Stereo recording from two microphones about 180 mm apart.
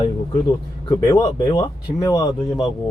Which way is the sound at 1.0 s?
15° left (ahead or behind).